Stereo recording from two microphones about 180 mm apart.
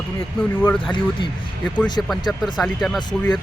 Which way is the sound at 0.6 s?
5° left (ahead or behind).